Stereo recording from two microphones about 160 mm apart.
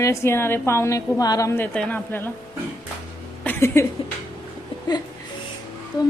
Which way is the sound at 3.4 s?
15° left (ahead or behind).